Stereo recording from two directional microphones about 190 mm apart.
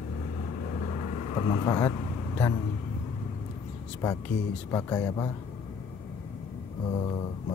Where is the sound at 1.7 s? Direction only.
10° left (ahead or behind).